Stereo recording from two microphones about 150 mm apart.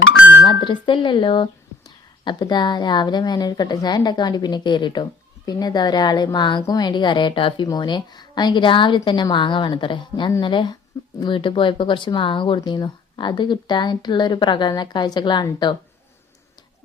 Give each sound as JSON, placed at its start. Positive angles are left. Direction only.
{"t": 0.4, "sound": "speech", "side_deg": 35}